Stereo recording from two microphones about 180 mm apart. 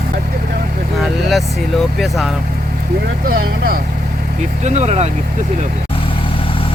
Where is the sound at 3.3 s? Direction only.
55° right (ahead or behind).